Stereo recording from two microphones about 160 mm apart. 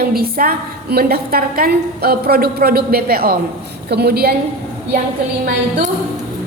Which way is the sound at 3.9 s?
85° right.